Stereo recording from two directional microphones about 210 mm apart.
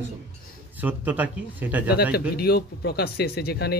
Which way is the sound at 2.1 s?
50° left (ahead or behind).